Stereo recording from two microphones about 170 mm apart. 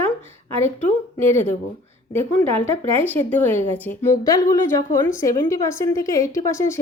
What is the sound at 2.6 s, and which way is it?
A woman's voice, 15° left (ahead or behind).